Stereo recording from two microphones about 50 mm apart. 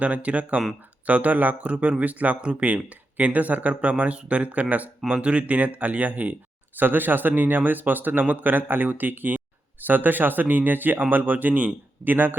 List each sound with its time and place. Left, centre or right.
0.0 s speech: right